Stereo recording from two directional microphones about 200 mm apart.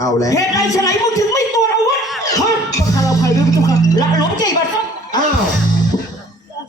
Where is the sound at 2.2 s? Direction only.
15° left (ahead or behind).